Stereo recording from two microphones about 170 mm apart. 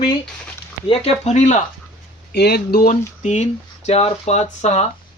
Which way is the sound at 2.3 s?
70° left (ahead or behind).